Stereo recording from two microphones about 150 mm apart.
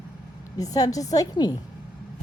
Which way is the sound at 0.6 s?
25° left (ahead or behind).